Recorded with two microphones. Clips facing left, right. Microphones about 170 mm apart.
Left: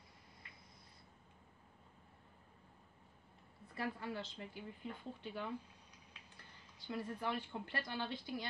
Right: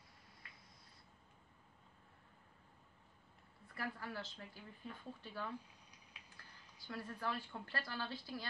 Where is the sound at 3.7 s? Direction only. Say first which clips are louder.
Left 3 dB; 20° left (ahead or behind).